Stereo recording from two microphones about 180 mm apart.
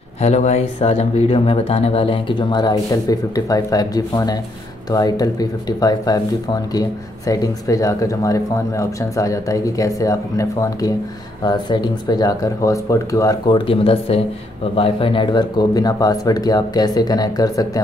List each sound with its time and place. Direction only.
0.2 s speech: 40° left (ahead or behind); by 17.8 s 20° left (ahead or behind)